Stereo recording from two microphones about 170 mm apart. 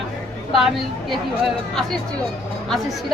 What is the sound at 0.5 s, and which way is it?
Speech, centre (ahead or behind).